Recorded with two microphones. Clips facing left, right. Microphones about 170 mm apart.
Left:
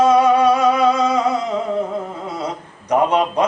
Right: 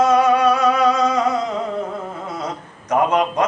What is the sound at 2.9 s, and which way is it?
Speech, 10° left (ahead or behind).